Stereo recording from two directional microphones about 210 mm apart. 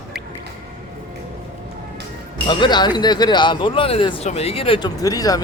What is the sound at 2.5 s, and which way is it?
Speech, 20° left (ahead or behind).